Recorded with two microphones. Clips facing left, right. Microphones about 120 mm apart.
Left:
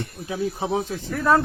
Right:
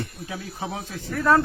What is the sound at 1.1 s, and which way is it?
Speech, 10° left (ahead or behind).